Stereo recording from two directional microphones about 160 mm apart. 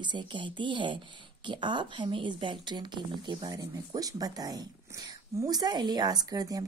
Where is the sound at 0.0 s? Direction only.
30° right (ahead or behind).